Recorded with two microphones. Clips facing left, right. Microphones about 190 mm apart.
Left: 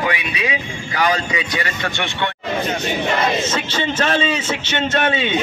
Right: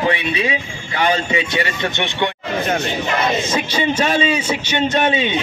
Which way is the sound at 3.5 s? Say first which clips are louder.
Right 3 dB; 10° right (ahead or behind).